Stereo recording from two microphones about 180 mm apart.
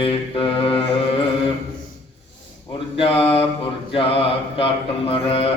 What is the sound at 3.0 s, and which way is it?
Mantra, 30° left (ahead or behind).